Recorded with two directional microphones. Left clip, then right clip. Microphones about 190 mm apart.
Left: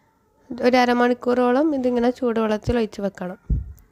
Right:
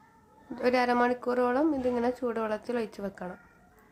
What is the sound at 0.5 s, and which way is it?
Speech, 35° left (ahead or behind).